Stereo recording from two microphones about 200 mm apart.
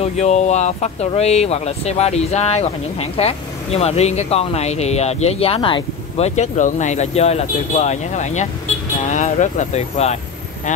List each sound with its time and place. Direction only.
0.0 s speech: 35° left (ahead or behind)